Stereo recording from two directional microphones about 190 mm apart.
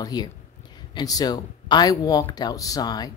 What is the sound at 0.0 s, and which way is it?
Speech, 20° left (ahead or behind).